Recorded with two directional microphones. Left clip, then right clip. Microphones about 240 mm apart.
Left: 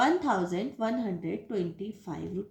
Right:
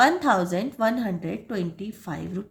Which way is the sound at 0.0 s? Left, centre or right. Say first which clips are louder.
Right 7 dB; right.